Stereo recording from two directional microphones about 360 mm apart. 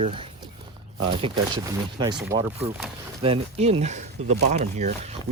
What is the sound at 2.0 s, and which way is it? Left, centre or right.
Speech, centre.